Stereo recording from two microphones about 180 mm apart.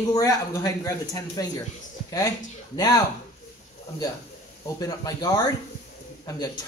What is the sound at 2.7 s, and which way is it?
Speech, 20° left (ahead or behind).